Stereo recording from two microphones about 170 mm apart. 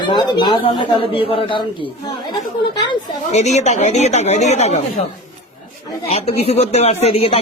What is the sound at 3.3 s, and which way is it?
A man's voice, 40° left (ahead or behind).